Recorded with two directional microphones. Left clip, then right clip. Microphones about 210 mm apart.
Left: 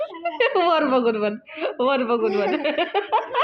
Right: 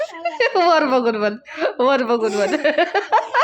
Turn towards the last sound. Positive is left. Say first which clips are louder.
# right 4 dB
turn(degrees=-35)  # may be behind; listen again after turning